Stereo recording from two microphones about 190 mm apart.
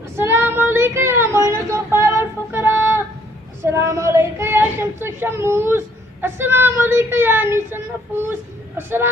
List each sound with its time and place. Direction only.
0.1 s speech: 15° right (ahead or behind)
1.5 s child singing: 15° right (ahead or behind)
3.6 s speech: 15° right (ahead or behind)